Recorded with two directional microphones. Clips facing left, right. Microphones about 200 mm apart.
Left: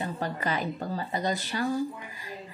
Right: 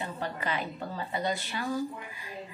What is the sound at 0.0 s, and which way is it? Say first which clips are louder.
A woman's voice: left 3 dB; 40° left (ahead or behind).